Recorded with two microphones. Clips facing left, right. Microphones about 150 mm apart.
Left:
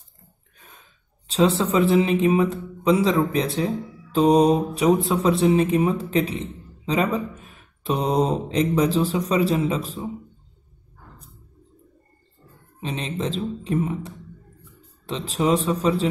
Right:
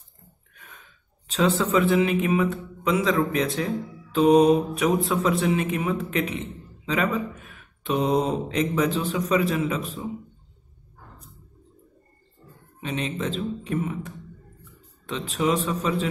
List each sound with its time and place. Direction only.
0.6 s speech: 35° left (ahead or behind)
12.8 s speech: 30° left (ahead or behind)